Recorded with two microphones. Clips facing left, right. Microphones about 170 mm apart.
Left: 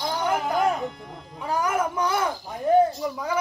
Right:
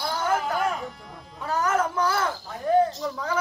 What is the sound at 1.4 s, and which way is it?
A man's voice, 10° left (ahead or behind).